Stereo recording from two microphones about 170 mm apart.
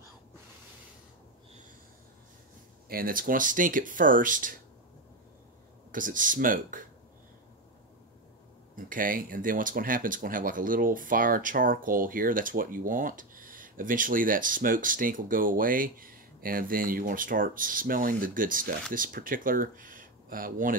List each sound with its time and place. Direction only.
2.9 s speech: 55° right (ahead or behind)
5.9 s speech: 50° right (ahead or behind)
8.7 s speech: 55° right (ahead or behind)